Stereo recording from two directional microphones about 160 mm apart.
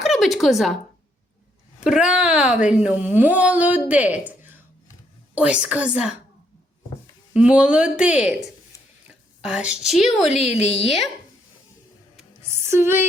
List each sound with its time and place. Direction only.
0.0 s a sound: centre (ahead or behind)
1.8 s speech: 5° right (ahead or behind)
5.3 s speech: 5° right (ahead or behind)
7.3 s speech: 5° right (ahead or behind)
9.4 s a woman's voice: 5° right (ahead or behind)
10.5 s a woman's voice: 40° left (ahead or behind)
12.1 s music: 15° right (ahead or behind)